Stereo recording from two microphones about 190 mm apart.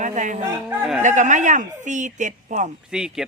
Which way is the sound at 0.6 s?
5° right (ahead or behind).